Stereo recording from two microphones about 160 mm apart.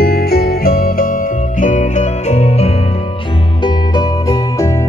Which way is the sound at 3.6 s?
30° left (ahead or behind).